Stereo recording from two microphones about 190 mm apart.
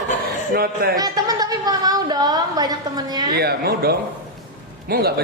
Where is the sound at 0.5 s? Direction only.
55° right (ahead or behind).